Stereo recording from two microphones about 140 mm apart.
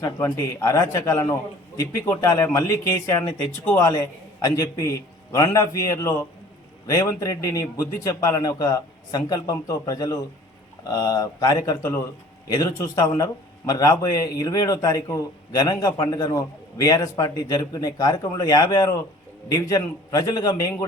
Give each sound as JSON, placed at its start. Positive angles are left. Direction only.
{"t": 0.0, "sound": "speech", "side_deg": 20}